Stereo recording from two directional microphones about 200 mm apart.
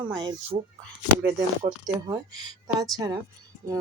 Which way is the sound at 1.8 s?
20° right (ahead or behind).